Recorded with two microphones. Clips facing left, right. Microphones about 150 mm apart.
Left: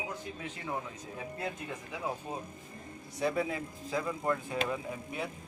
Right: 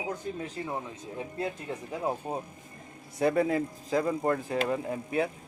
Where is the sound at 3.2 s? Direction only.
50° right (ahead or behind).